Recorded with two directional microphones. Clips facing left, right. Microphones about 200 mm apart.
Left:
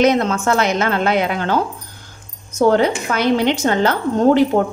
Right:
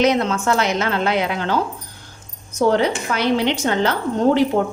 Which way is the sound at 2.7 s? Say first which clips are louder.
Left 3 dB; 50° left (ahead or behind).